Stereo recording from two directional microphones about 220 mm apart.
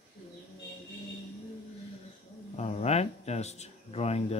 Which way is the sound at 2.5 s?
30° left (ahead or behind).